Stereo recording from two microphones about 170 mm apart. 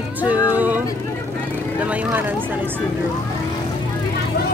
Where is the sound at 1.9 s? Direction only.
10° right (ahead or behind).